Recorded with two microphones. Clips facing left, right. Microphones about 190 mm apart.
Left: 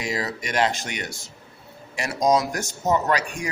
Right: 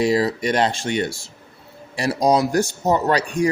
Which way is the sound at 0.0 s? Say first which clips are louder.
Right 10 dB; 35° right (ahead or behind).